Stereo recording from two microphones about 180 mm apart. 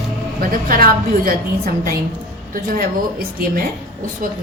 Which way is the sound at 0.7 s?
55° right (ahead or behind).